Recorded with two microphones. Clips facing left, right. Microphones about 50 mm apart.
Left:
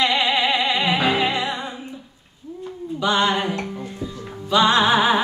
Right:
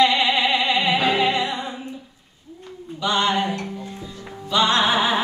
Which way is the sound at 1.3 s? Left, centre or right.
Left.